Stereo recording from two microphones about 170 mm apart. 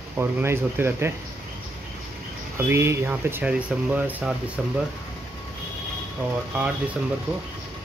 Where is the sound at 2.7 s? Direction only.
15° right (ahead or behind).